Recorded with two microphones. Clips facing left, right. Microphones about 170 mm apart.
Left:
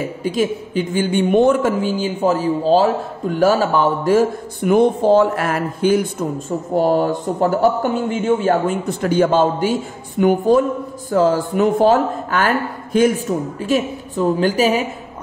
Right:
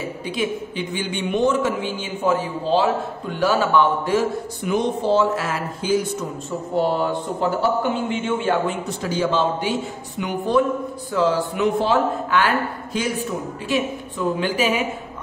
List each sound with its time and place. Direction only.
0.2 s a man's voice: 45° left (ahead or behind)
6.8 s a man's voice: 45° left (ahead or behind)
8.8 s a man's voice: 55° left (ahead or behind); by 14.9 s 40° left (ahead or behind)